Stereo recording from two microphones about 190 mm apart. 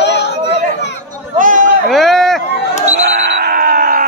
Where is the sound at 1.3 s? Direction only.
45° right (ahead or behind).